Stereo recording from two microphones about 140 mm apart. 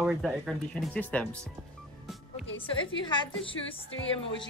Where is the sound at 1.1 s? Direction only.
10° left (ahead or behind).